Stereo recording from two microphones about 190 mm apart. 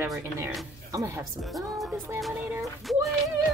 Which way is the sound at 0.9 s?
15° right (ahead or behind).